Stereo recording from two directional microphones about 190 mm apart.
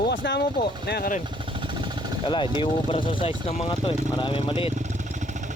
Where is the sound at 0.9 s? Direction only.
55° left (ahead or behind).